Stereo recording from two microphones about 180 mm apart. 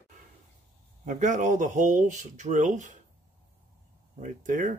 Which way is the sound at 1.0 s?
45° right (ahead or behind).